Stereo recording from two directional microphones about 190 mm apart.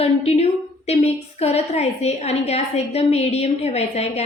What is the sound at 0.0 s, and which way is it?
A woman's voice, 30° left (ahead or behind).